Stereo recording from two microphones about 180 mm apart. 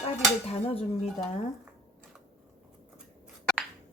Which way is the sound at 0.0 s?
35° left (ahead or behind).